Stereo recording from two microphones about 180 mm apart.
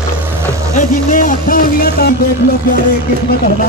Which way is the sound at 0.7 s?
45° left (ahead or behind).